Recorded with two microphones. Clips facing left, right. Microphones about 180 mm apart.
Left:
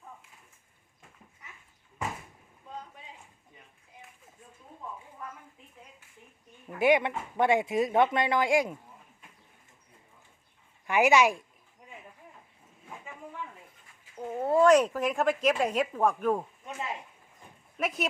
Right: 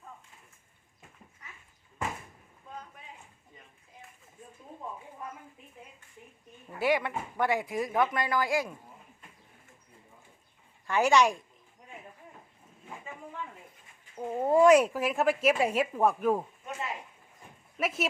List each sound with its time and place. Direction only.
6.7 s speech: 20° left (ahead or behind)
10.8 s speech: 10° left (ahead or behind)
14.2 s speech: 15° right (ahead or behind)
17.7 s speech: centre (ahead or behind)